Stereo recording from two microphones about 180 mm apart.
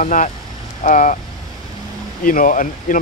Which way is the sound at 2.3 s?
50° left (ahead or behind).